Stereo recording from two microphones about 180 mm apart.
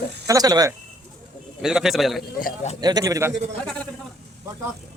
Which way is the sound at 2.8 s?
20° right (ahead or behind).